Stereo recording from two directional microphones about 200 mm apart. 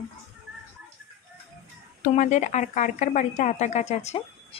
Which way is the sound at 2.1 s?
40° left (ahead or behind).